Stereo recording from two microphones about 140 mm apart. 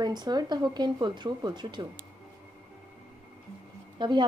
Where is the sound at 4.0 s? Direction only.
30° right (ahead or behind).